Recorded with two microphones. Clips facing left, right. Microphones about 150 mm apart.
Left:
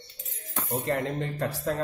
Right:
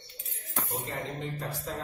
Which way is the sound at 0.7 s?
70° left (ahead or behind).